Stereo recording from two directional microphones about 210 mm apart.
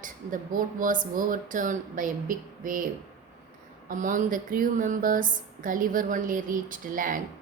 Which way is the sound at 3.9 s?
40° right (ahead or behind).